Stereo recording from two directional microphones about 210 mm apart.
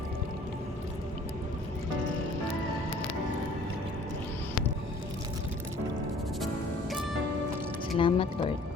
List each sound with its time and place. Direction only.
7.9 s speech: 25° left (ahead or behind)